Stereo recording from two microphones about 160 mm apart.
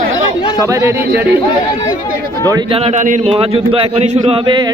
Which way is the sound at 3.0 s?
55° right (ahead or behind).